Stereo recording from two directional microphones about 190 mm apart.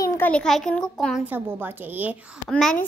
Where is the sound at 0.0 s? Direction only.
10° left (ahead or behind); by 2.1 s 10° right (ahead or behind).